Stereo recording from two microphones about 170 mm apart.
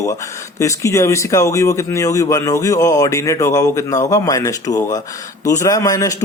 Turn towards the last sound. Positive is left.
turn(degrees=20)  # may be behind; listen again after turning